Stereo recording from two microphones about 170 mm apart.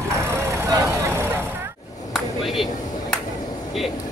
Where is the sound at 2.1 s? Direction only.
Centre (ahead or behind).